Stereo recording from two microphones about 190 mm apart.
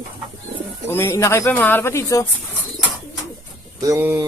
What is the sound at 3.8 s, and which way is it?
Speech, 15° right (ahead or behind).